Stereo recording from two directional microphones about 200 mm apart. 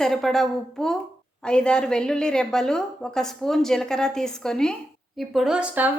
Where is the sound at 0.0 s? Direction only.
Centre (ahead or behind).